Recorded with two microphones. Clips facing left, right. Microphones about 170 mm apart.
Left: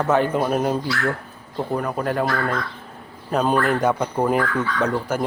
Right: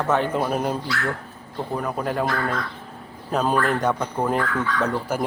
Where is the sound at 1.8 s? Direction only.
Centre (ahead or behind).